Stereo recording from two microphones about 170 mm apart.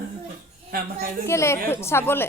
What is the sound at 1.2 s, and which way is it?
Speech, 15° left (ahead or behind).